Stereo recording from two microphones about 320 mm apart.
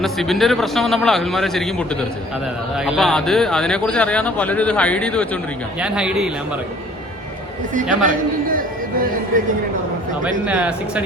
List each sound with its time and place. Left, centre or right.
0.0 s speech: centre
7.7 s a man's voice: right
10.2 s speech: centre